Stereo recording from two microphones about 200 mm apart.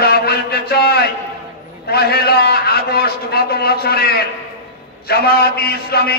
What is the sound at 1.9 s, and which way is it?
A man's voice, 55° left (ahead or behind).